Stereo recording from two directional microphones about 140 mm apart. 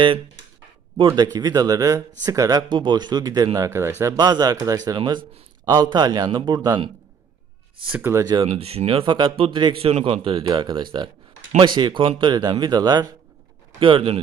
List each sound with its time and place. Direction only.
0.9 s speech: 30° right (ahead or behind)
7.9 s speech: 20° right (ahead or behind)
8.5 s speech: 45° right (ahead or behind)